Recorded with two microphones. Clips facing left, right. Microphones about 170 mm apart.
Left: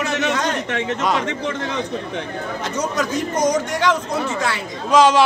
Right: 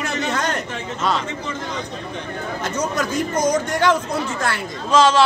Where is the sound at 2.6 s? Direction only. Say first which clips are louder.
Even; centre (ahead or behind).